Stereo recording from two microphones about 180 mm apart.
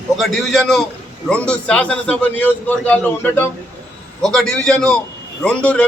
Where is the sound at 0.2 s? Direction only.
Centre (ahead or behind).